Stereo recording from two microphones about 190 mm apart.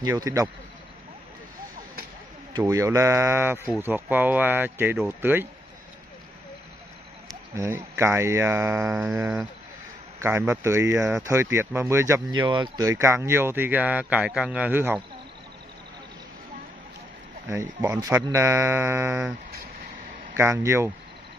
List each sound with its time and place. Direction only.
0.0 s speech: 15° right (ahead or behind)
2.6 s speech: 15° right (ahead or behind)
7.5 s speech: 15° right (ahead or behind)
8.8 s a sound: 5° right (ahead or behind)
10.2 s speech: 15° right (ahead or behind)
17.5 s speech: 15° right (ahead or behind)
20.3 s speech: 15° right (ahead or behind)